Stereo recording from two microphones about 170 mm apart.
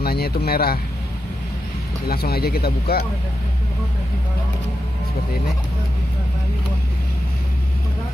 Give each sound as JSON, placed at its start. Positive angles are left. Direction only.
{"t": 0.0, "sound": "speech", "side_deg": 65}
{"t": 2.0, "sound": "speech", "side_deg": 65}